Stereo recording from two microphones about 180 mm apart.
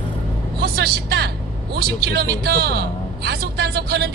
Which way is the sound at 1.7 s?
65° right (ahead or behind).